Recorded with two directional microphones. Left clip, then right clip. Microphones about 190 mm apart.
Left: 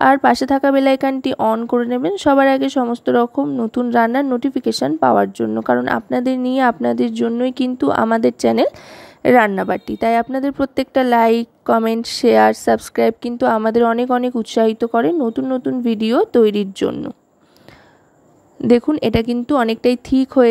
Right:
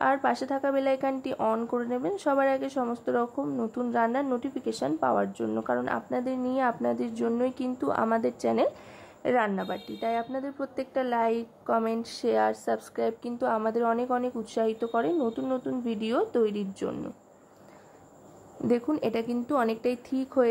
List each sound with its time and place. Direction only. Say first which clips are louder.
0.0 s a woman's voice: left 13 dB; 50° left (ahead or behind)
18.9 s a woman's voice: left 11 dB; 45° left (ahead or behind)